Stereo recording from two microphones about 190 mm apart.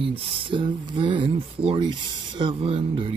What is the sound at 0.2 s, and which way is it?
Speech, 30° right (ahead or behind).